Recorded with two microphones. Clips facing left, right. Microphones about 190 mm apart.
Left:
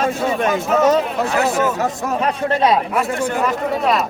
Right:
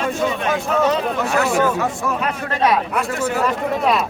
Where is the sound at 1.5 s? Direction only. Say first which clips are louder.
Even; 20° left (ahead or behind).